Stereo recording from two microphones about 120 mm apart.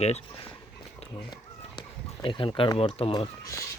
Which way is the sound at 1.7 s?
45° left (ahead or behind).